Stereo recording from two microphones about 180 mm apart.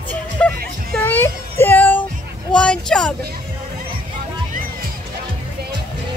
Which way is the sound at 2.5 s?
5° left (ahead or behind).